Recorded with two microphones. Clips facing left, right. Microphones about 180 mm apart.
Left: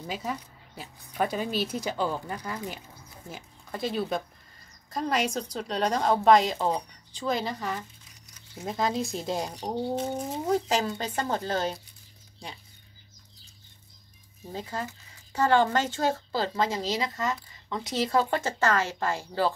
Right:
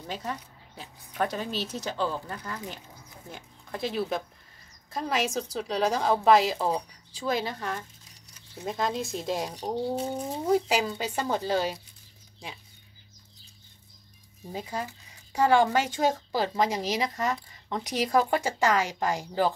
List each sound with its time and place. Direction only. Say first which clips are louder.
0.0 s a woman's voice: left 2 dB; 5° left (ahead or behind)
10.5 s a woman's voice: right 2 dB; 10° right (ahead or behind)
14.5 s a woman's voice: even; 15° right (ahead or behind)